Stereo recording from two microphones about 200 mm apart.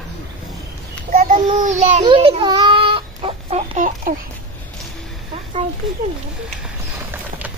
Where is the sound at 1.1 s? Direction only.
40° right (ahead or behind).